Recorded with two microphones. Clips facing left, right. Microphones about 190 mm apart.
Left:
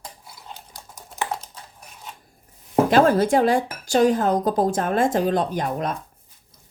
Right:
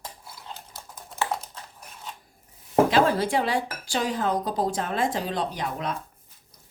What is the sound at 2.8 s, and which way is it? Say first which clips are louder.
Speech: left 5 dB; 45° left (ahead or behind).